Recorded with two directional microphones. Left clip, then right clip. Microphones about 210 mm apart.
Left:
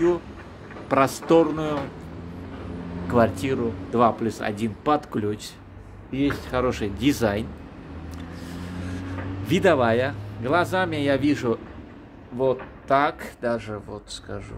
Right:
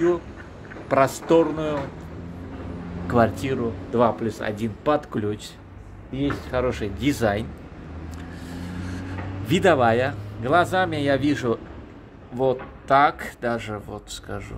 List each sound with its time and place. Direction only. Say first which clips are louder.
0.8 s speech: right 1 dB; 5° left (ahead or behind)
3.1 s speech: even; centre (ahead or behind)
9.5 s speech: right 1 dB; centre (ahead or behind)